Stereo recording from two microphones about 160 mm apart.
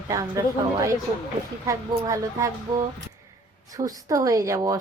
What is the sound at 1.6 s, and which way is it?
Speech, 20° right (ahead or behind).